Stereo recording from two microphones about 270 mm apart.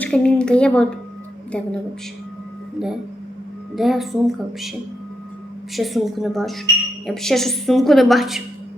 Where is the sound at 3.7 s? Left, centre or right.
Centre.